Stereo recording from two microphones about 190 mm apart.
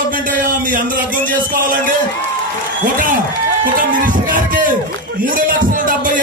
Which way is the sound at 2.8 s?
45° right (ahead or behind).